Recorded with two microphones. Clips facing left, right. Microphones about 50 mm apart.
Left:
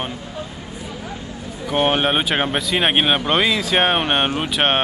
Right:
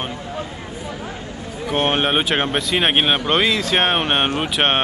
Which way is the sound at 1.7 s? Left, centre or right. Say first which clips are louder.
Left 1 dB; centre.